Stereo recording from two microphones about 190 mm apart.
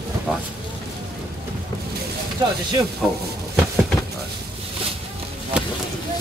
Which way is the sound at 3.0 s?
Centre (ahead or behind).